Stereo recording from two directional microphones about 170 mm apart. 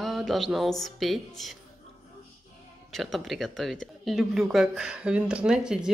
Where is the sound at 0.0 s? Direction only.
Centre (ahead or behind).